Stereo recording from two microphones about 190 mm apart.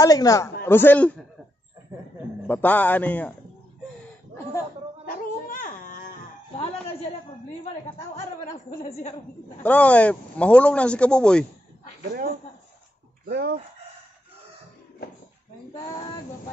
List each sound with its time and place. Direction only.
0.0 s speech: 20° left (ahead or behind)
2.4 s speech: 10° left (ahead or behind)
5.0 s baby cry: 45° left (ahead or behind)
8.2 s speech: 35° left (ahead or behind)
9.6 s speech: 5° left (ahead or behind)
13.3 s speech: 60° right (ahead or behind)